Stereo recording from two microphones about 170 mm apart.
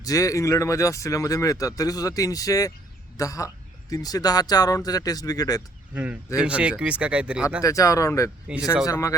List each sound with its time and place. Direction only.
0.0 s speech: 20° left (ahead or behind)
5.9 s speech: 10° right (ahead or behind)
7.6 s speech: 20° left (ahead or behind)